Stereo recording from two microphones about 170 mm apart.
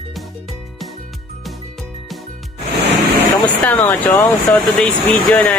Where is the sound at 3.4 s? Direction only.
10° left (ahead or behind).